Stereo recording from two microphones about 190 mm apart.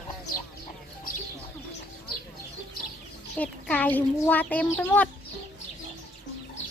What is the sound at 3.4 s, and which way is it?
A child's voice, 10° left (ahead or behind).